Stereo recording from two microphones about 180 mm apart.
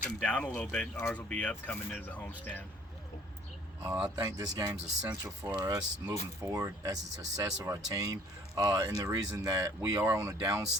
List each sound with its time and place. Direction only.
0.2 s speech: 5° left (ahead or behind)
4.1 s speech: 20° right (ahead or behind)